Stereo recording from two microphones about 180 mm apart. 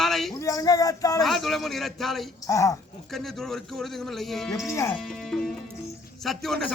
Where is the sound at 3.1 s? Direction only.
Centre (ahead or behind).